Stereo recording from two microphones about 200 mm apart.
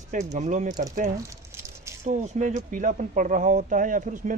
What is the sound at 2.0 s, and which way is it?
Speech, 35° right (ahead or behind).